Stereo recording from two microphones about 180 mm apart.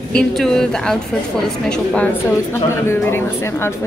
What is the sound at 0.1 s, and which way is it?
Speech, 5° left (ahead or behind).